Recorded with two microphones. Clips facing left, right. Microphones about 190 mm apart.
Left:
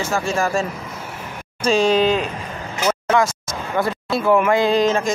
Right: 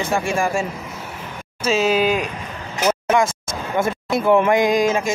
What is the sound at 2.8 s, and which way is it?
Vehicle, 20° right (ahead or behind).